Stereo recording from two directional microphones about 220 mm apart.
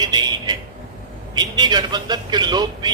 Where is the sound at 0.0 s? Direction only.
20° right (ahead or behind).